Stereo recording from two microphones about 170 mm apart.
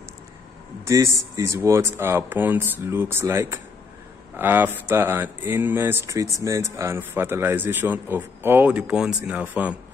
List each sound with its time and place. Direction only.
0.8 s speech: 15° right (ahead or behind)